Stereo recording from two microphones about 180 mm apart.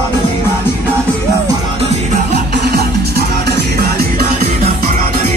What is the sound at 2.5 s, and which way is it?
Music, 60° right (ahead or behind).